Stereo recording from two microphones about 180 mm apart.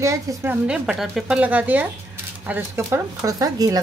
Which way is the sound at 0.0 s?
15° right (ahead or behind).